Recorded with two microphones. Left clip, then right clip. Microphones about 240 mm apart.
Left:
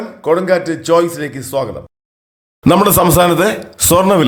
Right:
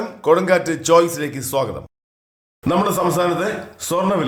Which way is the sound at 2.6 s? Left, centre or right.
Left.